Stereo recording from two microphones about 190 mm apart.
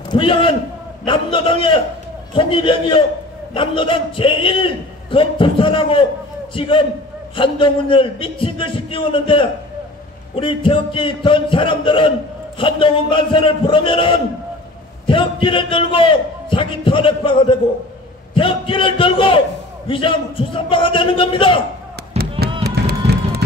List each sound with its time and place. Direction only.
0.1 s a man's voice: 25° left (ahead or behind)
22.6 s run: 60° right (ahead or behind)